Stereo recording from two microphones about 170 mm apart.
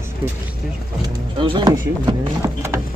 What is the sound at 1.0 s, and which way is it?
Speech, 30° right (ahead or behind).